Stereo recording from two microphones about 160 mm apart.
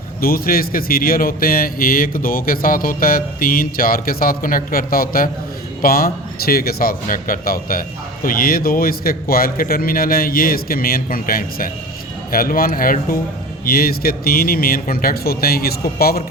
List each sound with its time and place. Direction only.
0.2 s a man's voice: 65° left (ahead or behind)